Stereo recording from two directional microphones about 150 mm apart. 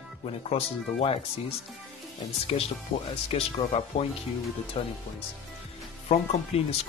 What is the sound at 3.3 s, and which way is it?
Speech, 40° left (ahead or behind).